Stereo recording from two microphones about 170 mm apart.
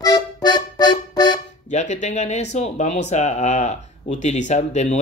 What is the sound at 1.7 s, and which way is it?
Speech, 45° left (ahead or behind).